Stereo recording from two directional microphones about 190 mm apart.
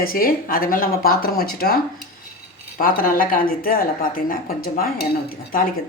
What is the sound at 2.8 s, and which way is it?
Speech, 50° left (ahead or behind).